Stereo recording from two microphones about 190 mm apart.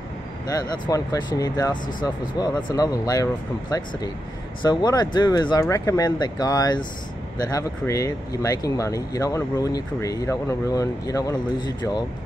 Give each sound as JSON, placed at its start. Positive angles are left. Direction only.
{"t": 0.5, "sound": "speech", "side_deg": 20}
{"t": 4.6, "sound": "speech", "side_deg": 20}